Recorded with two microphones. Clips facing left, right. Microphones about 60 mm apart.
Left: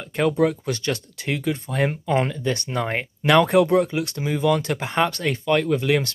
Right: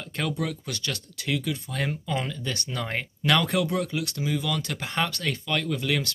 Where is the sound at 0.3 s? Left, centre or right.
Left.